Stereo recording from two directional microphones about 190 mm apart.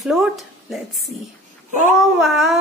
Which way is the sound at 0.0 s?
Centre (ahead or behind).